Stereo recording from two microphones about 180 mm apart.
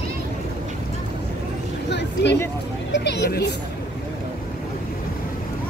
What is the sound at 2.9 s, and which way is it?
Vehicle, 70° left (ahead or behind).